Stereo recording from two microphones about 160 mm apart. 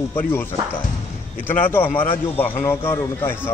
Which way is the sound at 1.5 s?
10° left (ahead or behind).